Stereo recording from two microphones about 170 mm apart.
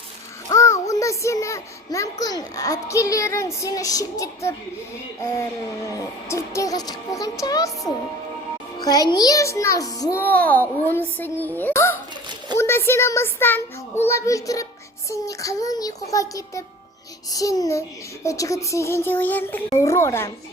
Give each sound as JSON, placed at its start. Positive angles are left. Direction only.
{"t": 0.4, "sound": "a sound", "side_deg": 15}
{"t": 2.2, "sound": "speech", "side_deg": 20}
{"t": 5.9, "sound": "a child's voice", "side_deg": 15}